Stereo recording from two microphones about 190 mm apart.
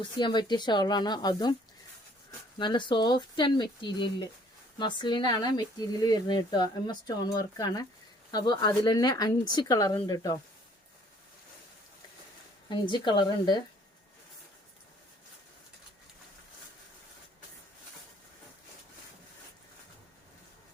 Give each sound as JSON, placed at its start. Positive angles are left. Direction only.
{"t": 0.0, "sound": "speech", "side_deg": 25}
{"t": 2.6, "sound": "speech", "side_deg": 25}
{"t": 12.6, "sound": "speech", "side_deg": 25}